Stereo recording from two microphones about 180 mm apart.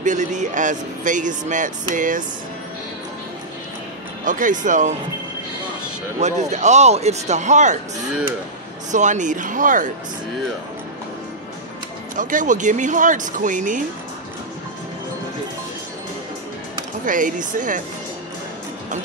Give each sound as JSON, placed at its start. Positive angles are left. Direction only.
{"t": 0.0, "sound": "speech", "side_deg": -45}
{"t": 4.2, "sound": "speech", "side_deg": -45}
{"t": 6.1, "sound": "speech", "side_deg": -40}
{"t": 8.9, "sound": "speech", "side_deg": -40}
{"t": 12.2, "sound": "speech", "side_deg": -45}
{"t": 17.0, "sound": "speech", "side_deg": -45}